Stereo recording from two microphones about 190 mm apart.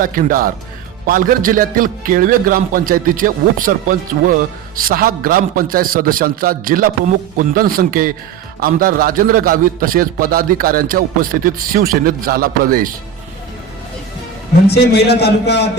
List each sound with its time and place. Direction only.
0.0 s a man's voice: 45° right (ahead or behind)
14.7 s a man's voice: 60° left (ahead or behind)